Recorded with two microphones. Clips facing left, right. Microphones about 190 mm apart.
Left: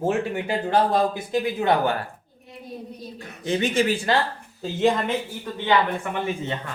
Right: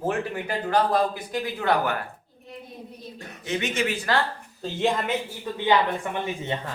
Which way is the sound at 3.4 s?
35° left (ahead or behind).